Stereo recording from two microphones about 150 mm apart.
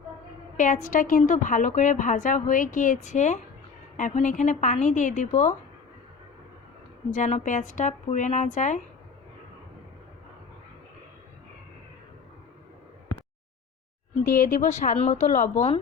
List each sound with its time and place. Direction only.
0.5 s a woman's voice: 55° left (ahead or behind)
7.1 s a woman's voice: 50° left (ahead or behind)
14.3 s a woman's voice: 60° left (ahead or behind)